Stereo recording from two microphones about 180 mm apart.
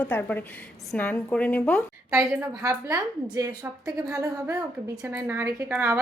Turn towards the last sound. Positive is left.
turn(degrees=-10)  # may be behind; listen again after turning